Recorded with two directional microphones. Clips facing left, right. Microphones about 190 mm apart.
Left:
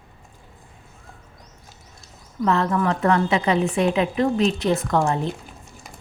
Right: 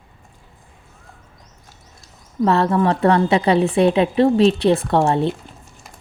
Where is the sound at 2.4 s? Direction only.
35° right (ahead or behind).